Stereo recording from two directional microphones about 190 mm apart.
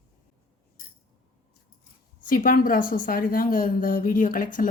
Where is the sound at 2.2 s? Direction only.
45° left (ahead or behind).